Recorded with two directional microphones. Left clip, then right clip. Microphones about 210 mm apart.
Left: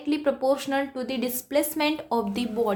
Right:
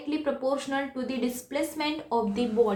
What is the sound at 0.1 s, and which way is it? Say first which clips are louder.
A woman's voice: left 4 dB; 50° left (ahead or behind).